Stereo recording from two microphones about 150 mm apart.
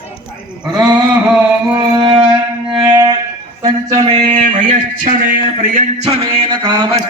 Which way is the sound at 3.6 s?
30° right (ahead or behind).